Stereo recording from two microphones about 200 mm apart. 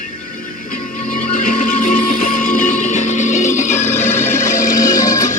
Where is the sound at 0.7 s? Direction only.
40° left (ahead or behind).